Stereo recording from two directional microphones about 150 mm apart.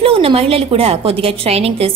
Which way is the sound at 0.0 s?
40° right (ahead or behind).